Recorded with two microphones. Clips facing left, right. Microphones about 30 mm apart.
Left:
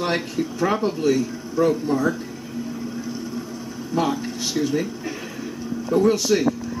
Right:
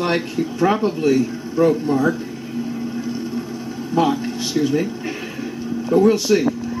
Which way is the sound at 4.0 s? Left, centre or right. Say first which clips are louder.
Right 4 dB; centre.